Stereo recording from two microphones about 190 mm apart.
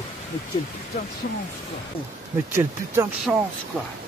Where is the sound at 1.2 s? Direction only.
55° left (ahead or behind).